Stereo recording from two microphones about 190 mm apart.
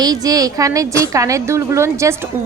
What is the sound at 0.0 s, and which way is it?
A woman's voice, 20° right (ahead or behind).